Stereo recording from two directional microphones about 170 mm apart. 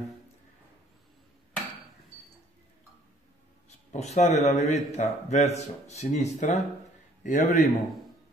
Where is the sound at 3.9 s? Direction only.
45° left (ahead or behind).